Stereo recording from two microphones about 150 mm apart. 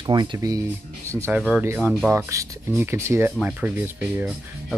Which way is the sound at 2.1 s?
20° right (ahead or behind).